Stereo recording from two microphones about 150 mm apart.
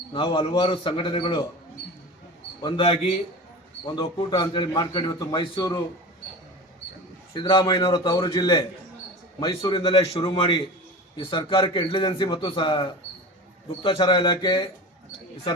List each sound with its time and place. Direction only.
0.1 s a man's voice: 35° left (ahead or behind)
2.6 s a man's voice: 35° left (ahead or behind)
7.3 s a man's voice: 35° left (ahead or behind)